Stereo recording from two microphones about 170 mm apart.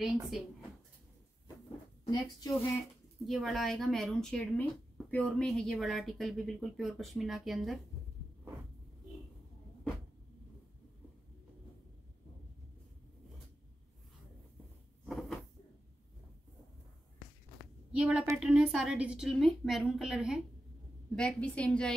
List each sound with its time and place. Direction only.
0.0 s speech: centre (ahead or behind)
2.0 s a woman's voice: 20° left (ahead or behind)
3.3 s speech: centre (ahead or behind)
15.0 s cupboard open or close: centre (ahead or behind)
17.9 s a woman's voice: 5° right (ahead or behind)